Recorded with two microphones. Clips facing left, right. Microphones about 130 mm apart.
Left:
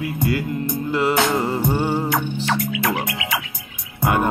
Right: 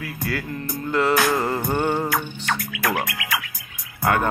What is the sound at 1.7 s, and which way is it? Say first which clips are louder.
Music: right 1 dB; 5° left (ahead or behind).